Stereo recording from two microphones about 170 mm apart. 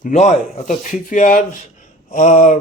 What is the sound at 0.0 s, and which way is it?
Speech, 45° left (ahead or behind).